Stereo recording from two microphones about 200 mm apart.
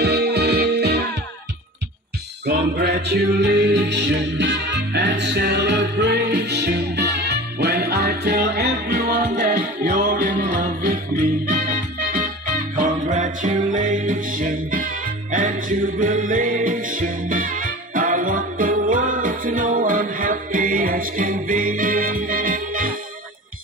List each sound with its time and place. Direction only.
0.0 s music: 55° right (ahead or behind)
2.4 s music: 55° right (ahead or behind)
12.2 s music: 40° right (ahead or behind)